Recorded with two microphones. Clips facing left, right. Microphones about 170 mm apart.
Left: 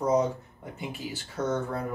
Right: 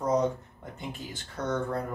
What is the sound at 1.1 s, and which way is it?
Speech, 5° left (ahead or behind).